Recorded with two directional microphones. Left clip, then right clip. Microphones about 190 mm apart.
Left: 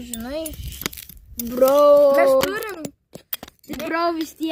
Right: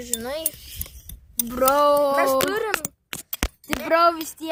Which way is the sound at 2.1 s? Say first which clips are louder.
Left 4 dB; 30° right (ahead or behind).